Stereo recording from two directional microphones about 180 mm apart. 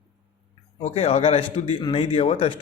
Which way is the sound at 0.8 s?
35° left (ahead or behind).